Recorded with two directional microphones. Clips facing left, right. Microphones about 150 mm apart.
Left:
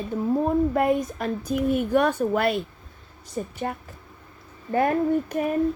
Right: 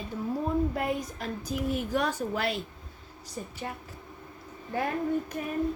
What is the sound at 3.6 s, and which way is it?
Speech, 55° left (ahead or behind).